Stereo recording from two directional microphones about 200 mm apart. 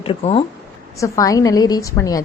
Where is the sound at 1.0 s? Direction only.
15° left (ahead or behind).